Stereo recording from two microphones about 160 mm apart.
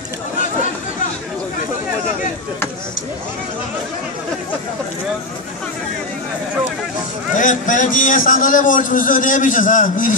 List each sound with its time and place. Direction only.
7.3 s a man's voice: 55° left (ahead or behind)